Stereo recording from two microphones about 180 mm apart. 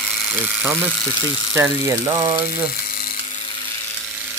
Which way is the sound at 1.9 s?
15° right (ahead or behind).